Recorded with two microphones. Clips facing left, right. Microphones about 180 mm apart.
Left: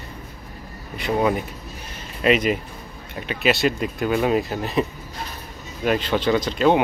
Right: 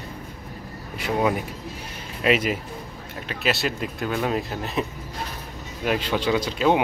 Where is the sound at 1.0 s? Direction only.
5° right (ahead or behind).